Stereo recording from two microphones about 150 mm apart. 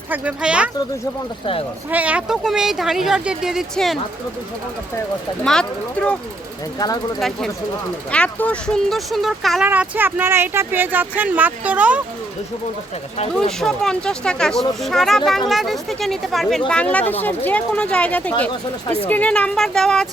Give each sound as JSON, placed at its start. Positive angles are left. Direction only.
{"t": 0.1, "sound": "speech", "side_deg": -10}
{"t": 1.9, "sound": "speech", "side_deg": -10}
{"t": 5.5, "sound": "speech", "side_deg": 5}
{"t": 6.7, "sound": "speech", "side_deg": 25}
{"t": 7.2, "sound": "speech", "side_deg": 0}
{"t": 9.6, "sound": "speech", "side_deg": -10}
{"t": 13.6, "sound": "speech", "side_deg": 5}